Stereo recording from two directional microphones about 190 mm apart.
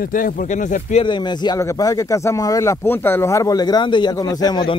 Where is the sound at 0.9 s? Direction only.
25° left (ahead or behind).